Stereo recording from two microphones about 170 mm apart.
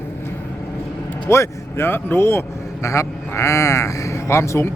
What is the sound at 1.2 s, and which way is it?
A man's voice, 15° left (ahead or behind).